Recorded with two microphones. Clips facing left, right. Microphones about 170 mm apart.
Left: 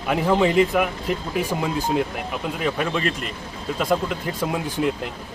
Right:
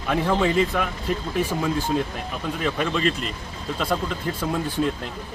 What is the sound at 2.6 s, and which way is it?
Speech, 5° left (ahead or behind).